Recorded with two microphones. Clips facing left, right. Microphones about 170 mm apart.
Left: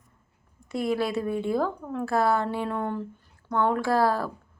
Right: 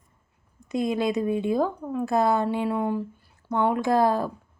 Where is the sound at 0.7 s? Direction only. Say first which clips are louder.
Right 2 dB; 20° right (ahead or behind).